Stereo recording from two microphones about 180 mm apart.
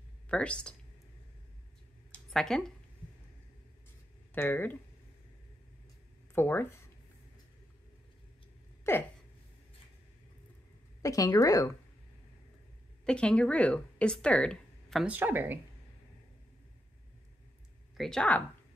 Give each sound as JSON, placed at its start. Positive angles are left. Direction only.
{"t": 0.3, "sound": "speech", "side_deg": 5}
{"t": 2.1, "sound": "a sound", "side_deg": 5}
{"t": 4.3, "sound": "speech", "side_deg": 10}
{"t": 6.3, "sound": "speech", "side_deg": 15}
{"t": 8.9, "sound": "a sound", "side_deg": 15}
{"t": 11.0, "sound": "a woman's voice", "side_deg": 20}
{"t": 13.0, "sound": "speech", "side_deg": 5}
{"t": 17.9, "sound": "speech", "side_deg": 0}